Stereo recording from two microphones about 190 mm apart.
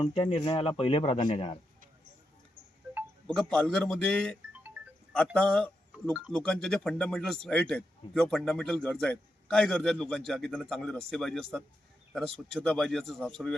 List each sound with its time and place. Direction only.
0.3 s speech: 30° left (ahead or behind)
3.2 s speech: 5° left (ahead or behind)